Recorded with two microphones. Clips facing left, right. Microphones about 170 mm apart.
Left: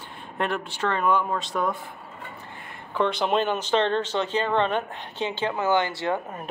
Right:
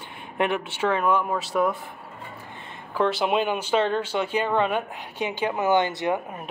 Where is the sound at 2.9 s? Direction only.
5° right (ahead or behind).